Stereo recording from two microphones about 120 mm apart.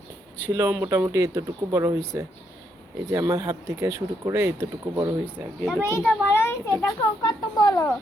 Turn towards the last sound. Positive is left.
turn(degrees=30)  # may be behind; listen again after turning